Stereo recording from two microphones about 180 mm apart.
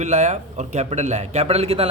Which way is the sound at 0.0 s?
40° right (ahead or behind).